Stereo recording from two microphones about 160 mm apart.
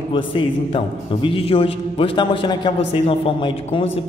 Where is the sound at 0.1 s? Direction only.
30° left (ahead or behind).